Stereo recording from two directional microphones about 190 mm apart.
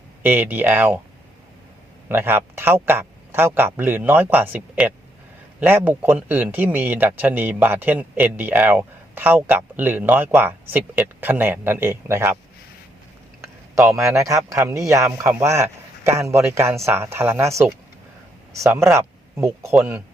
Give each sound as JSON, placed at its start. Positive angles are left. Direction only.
{"t": 0.2, "sound": "a man's voice", "side_deg": -10}
{"t": 2.0, "sound": "a man's voice", "side_deg": -10}
{"t": 14.2, "sound": "a man's voice", "side_deg": -15}
{"t": 15.1, "sound": "speech", "side_deg": -5}
{"t": 15.4, "sound": "a man's voice", "side_deg": -15}